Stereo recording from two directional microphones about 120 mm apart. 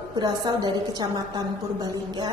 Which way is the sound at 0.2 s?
35° right (ahead or behind).